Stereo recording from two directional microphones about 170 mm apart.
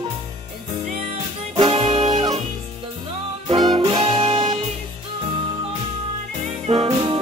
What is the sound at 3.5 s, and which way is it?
Music, 30° right (ahead or behind).